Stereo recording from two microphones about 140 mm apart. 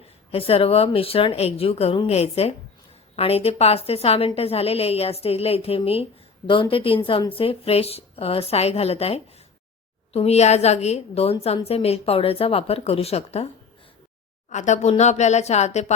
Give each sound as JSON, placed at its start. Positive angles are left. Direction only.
{"t": 0.3, "sound": "a woman's voice", "side_deg": 45}
{"t": 14.5, "sound": "a woman's voice", "side_deg": 55}